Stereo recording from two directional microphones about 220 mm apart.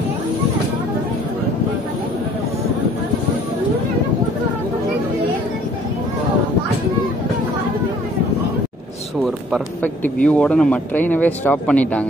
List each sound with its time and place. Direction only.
10.0 s speech: 5° left (ahead or behind)